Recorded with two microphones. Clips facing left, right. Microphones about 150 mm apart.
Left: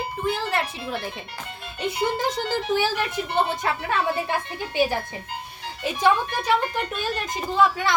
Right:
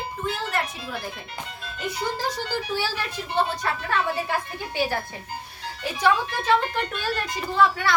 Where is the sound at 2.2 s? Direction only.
20° left (ahead or behind).